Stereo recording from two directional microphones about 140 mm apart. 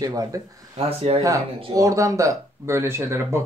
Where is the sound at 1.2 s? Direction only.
25° right (ahead or behind).